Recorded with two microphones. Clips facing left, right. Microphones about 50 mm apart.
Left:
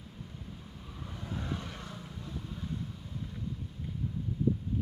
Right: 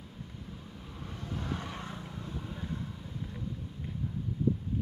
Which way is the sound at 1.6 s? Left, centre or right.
Right.